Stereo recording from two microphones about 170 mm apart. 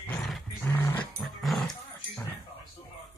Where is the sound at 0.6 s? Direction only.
15° left (ahead or behind).